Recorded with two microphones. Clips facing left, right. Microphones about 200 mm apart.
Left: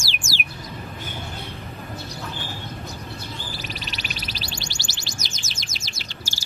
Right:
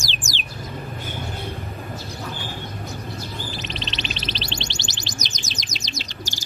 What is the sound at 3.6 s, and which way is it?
Music, 20° right (ahead or behind).